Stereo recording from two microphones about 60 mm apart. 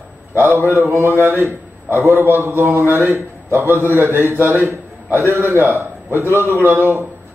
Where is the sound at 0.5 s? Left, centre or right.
Right.